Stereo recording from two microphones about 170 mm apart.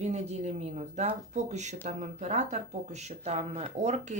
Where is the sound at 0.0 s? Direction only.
40° right (ahead or behind).